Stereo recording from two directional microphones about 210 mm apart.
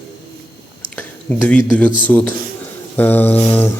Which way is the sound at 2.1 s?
10° left (ahead or behind).